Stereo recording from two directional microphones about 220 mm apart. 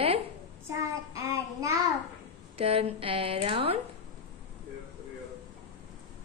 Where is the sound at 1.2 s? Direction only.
15° right (ahead or behind).